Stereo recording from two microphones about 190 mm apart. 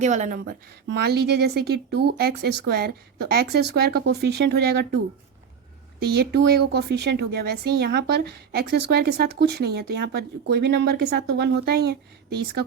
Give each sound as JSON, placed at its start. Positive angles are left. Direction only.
{"t": 0.0, "sound": "a woman's voice", "side_deg": -40}
{"t": 0.9, "sound": "a woman's voice", "side_deg": -60}
{"t": 6.0, "sound": "a woman's voice", "side_deg": -60}